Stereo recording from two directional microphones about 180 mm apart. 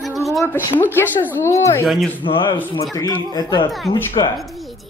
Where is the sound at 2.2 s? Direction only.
25° left (ahead or behind).